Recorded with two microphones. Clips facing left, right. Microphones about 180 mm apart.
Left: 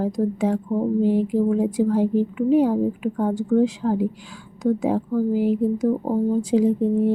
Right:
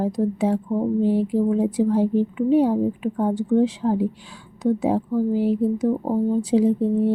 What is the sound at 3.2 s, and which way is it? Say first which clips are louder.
A woman's voice: even; 10° right (ahead or behind).